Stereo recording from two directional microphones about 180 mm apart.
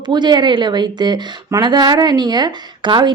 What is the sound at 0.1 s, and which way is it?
A woman's voice, 25° right (ahead or behind).